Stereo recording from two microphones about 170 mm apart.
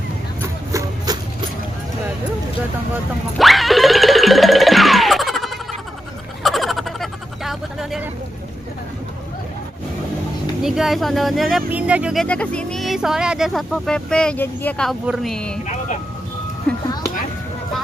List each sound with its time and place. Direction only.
0.7 s music: 20° right (ahead or behind)
3.3 s music: centre (ahead or behind)
6.4 s a sound: centre (ahead or behind)
10.6 s speech: centre (ahead or behind)
16.7 s music: 5° left (ahead or behind)